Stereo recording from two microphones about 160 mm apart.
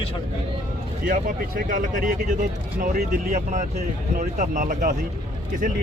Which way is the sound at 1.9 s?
55° right (ahead or behind).